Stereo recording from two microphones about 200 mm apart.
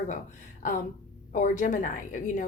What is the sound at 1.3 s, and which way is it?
A woman's voice, 40° left (ahead or behind).